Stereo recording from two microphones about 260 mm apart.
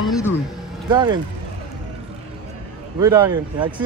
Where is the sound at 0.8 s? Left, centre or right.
Centre.